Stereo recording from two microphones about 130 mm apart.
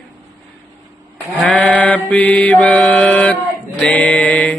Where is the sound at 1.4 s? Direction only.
10° left (ahead or behind).